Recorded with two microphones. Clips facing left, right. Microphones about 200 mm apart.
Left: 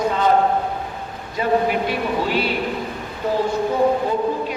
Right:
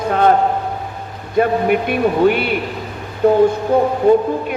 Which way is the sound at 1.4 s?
55° right (ahead or behind).